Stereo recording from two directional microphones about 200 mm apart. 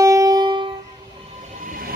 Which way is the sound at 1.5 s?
45° right (ahead or behind).